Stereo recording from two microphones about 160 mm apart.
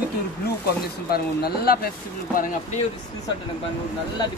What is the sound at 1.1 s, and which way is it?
Speech, 75° left (ahead or behind).